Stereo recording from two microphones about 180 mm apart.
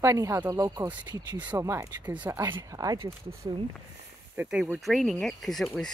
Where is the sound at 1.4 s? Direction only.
10° right (ahead or behind).